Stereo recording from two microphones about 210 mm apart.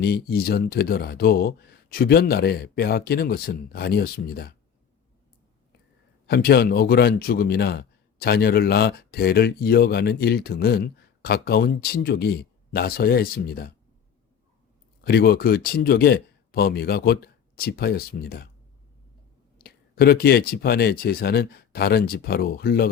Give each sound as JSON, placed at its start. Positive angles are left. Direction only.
{"t": 0.0, "sound": "a man's voice", "side_deg": 50}
{"t": 6.2, "sound": "a man's voice", "side_deg": 50}
{"t": 15.0, "sound": "a man's voice", "side_deg": 45}
{"t": 19.6, "sound": "a man's voice", "side_deg": 45}